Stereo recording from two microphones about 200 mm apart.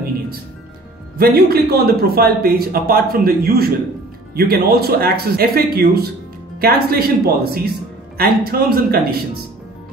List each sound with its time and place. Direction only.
1.1 s a man's voice: 50° right (ahead or behind)